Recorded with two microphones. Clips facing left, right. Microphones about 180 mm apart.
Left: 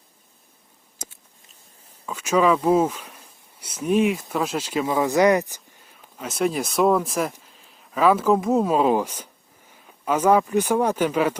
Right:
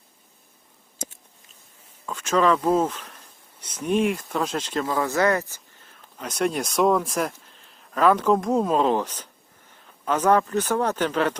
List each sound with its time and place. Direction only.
2.0 s speech: 10° left (ahead or behind)